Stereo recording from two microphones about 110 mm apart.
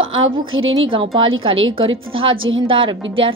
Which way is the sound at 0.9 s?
55° right (ahead or behind).